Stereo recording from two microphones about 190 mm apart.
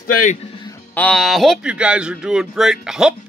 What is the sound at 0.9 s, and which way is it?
Speech, 5° left (ahead or behind).